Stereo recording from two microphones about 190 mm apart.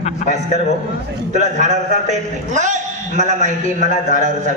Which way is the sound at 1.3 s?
40° right (ahead or behind).